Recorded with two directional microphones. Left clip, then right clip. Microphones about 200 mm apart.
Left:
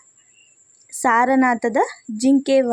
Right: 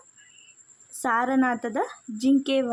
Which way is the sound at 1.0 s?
20° left (ahead or behind).